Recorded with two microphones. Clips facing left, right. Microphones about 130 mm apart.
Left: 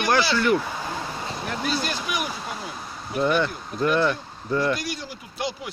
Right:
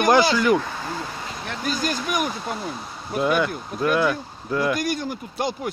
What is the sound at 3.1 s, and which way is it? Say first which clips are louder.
Speech: right 1 dB; 5° right (ahead or behind).